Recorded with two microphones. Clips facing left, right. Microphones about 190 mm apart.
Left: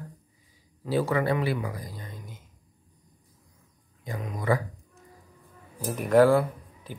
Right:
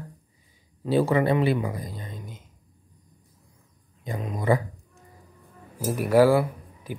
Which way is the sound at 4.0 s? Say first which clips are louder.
Right 3 dB; 25° right (ahead or behind).